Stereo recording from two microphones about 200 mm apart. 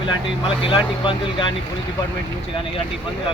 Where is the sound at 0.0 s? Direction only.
25° left (ahead or behind).